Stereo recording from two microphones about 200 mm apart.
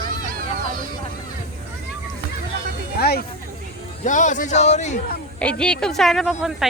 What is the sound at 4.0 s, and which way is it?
Speech, 40° left (ahead or behind).